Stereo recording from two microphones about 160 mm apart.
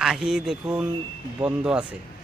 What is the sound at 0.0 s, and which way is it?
Speech, centre (ahead or behind).